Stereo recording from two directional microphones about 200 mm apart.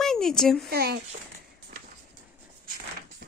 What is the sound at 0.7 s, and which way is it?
Speech, 50° right (ahead or behind).